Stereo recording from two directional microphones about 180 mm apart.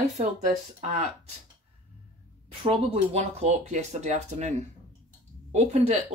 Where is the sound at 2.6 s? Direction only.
30° right (ahead or behind).